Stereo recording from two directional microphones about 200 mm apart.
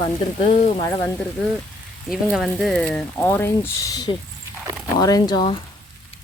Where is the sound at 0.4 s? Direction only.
20° left (ahead or behind).